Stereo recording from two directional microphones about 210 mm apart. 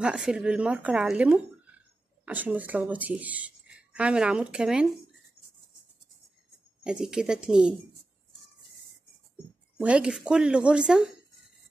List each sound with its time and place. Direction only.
0.0 s speech: 5° right (ahead or behind)
6.8 s speech: 5° right (ahead or behind)
9.8 s speech: 5° right (ahead or behind)